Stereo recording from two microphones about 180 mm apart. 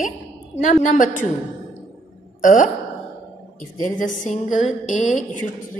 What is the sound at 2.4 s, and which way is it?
Speech, 50° left (ahead or behind).